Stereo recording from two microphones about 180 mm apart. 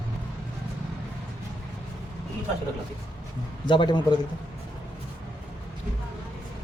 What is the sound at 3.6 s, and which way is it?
Speech, 25° left (ahead or behind).